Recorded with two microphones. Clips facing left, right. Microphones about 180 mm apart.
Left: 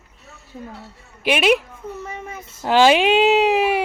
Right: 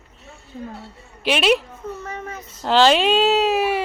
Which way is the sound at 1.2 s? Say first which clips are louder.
Left 1 dB; 10° left (ahead or behind).